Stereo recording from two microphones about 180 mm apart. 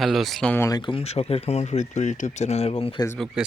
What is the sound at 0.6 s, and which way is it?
Speech, 25° left (ahead or behind).